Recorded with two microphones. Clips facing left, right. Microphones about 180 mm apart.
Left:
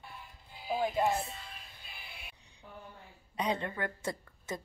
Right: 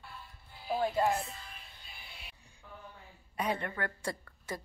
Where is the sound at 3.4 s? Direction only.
20° left (ahead or behind).